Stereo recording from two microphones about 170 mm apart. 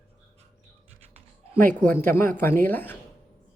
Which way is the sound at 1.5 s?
10° left (ahead or behind).